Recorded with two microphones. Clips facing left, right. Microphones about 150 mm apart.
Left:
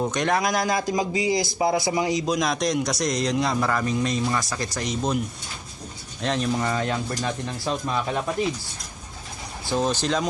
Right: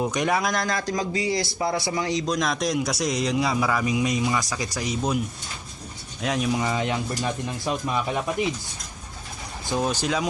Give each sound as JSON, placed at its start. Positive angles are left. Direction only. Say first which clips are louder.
{"t": 0.0, "sound": "a man's voice", "louder": "left 1 dB", "side_deg": -5}
{"t": 6.2, "sound": "speech", "louder": "even", "side_deg": -10}
{"t": 9.6, "sound": "speech", "louder": "left 1 dB", "side_deg": -10}